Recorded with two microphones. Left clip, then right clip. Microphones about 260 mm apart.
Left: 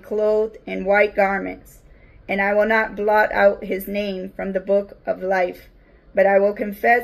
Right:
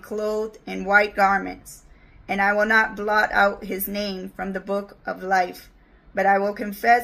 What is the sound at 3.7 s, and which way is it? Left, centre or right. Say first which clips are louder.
Speech: left 4 dB; right.